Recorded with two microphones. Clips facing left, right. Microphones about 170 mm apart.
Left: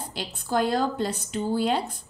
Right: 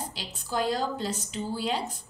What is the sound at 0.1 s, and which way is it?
A woman's voice, 55° left (ahead or behind).